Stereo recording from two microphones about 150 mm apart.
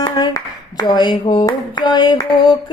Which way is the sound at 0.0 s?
25° left (ahead or behind).